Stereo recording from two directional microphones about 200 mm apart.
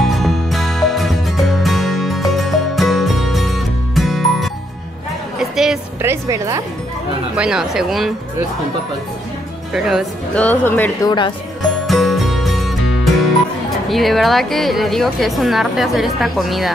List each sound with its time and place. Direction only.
0.0 s music: centre (ahead or behind)
6.0 s music: 15° right (ahead or behind)
7.3 s a woman's voice: 5° right (ahead or behind)
9.8 s speech: centre (ahead or behind)
11.1 s speech: 25° left (ahead or behind)
11.9 s music: centre (ahead or behind)
13.8 s a woman's voice: centre (ahead or behind)